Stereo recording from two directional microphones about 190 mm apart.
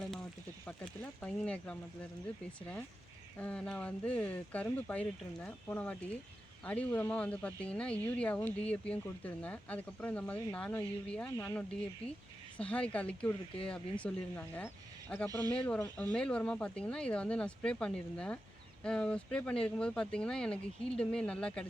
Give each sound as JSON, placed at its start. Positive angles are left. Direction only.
{"t": 0.0, "sound": "a sound", "side_deg": 5}
{"t": 1.2, "sound": "speech", "side_deg": 5}
{"t": 3.3, "sound": "speech", "side_deg": 5}
{"t": 15.3, "sound": "speech", "side_deg": -20}
{"t": 15.5, "sound": "speech", "side_deg": 5}